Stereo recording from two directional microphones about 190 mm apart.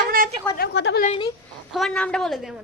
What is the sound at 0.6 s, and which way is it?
Speech, 65° left (ahead or behind).